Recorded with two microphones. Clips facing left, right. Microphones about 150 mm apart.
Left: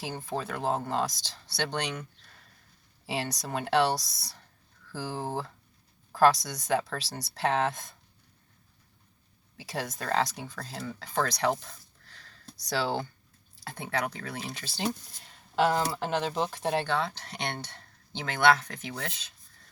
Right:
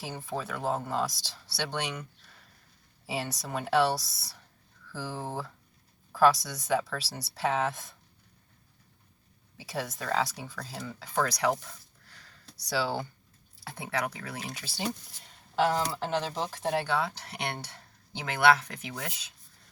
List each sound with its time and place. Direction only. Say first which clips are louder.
0.0 s speech: left 2 dB; centre (ahead or behind)
3.2 s speech: left 1 dB; 5° right (ahead or behind)
5.0 s speech: left 3 dB; 30° left (ahead or behind)
6.1 s speech: left 1 dB; 5° right (ahead or behind)
9.6 s speech: even; 5° right (ahead or behind)
12.6 s speech: left 1 dB; 5° right (ahead or behind)
15.5 s speech: left 1 dB; 5° left (ahead or behind)
16.4 s speech: left 2 dB; 5° right (ahead or behind)